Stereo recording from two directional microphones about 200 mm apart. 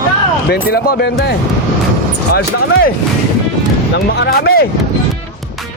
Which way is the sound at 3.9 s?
55° left (ahead or behind).